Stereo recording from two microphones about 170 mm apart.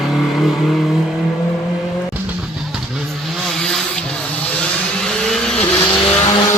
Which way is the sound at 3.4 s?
5° left (ahead or behind).